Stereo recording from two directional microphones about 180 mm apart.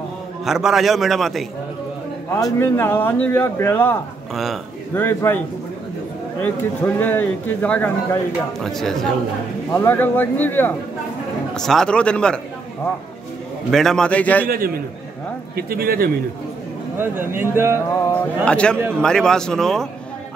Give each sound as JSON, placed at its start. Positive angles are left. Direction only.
{"t": 0.5, "sound": "a man's voice", "side_deg": 0}
{"t": 2.6, "sound": "speech", "side_deg": 15}
{"t": 6.4, "sound": "speech", "side_deg": 10}
{"t": 9.7, "sound": "a man's voice", "side_deg": 15}
{"t": 13.7, "sound": "a man's voice", "side_deg": 0}
{"t": 15.5, "sound": "speech", "side_deg": -55}
{"t": 17.0, "sound": "speech", "side_deg": -10}
{"t": 18.0, "sound": "a man's voice", "side_deg": 5}